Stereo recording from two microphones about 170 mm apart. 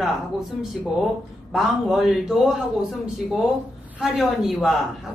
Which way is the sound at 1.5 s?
Centre (ahead or behind).